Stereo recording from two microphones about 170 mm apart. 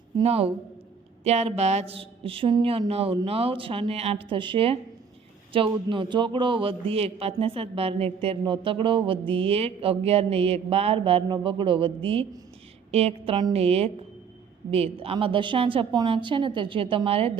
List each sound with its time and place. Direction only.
0.2 s a man's voice: 35° right (ahead or behind)